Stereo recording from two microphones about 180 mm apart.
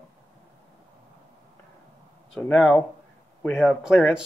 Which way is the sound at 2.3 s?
5° left (ahead or behind).